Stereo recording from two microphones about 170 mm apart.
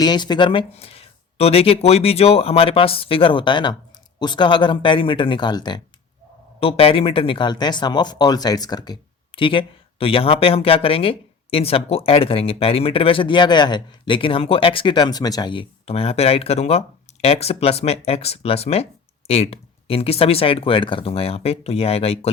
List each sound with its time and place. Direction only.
0.0 s speech: 25° left (ahead or behind)